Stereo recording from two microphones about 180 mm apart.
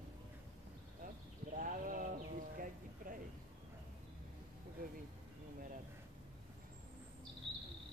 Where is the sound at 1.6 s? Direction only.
45° right (ahead or behind).